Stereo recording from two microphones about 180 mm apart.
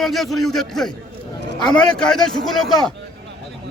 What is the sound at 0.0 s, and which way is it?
A man's voice, centre (ahead or behind).